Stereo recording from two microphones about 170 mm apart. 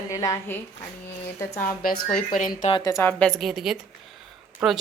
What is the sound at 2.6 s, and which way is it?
Speech, 30° left (ahead or behind).